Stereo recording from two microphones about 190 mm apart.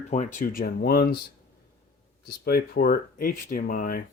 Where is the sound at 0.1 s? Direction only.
40° left (ahead or behind).